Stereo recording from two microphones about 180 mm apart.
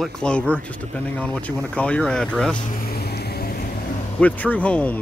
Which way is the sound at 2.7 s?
55° left (ahead or behind).